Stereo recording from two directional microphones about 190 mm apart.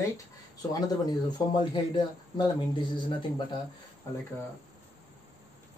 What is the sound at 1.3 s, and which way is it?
Speech, 25° left (ahead or behind).